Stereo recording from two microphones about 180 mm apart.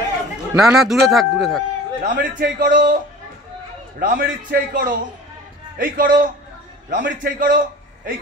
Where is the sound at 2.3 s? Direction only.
50° right (ahead or behind).